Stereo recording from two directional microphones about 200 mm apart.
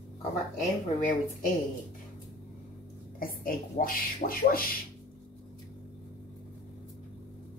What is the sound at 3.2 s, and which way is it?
Speech, 45° left (ahead or behind).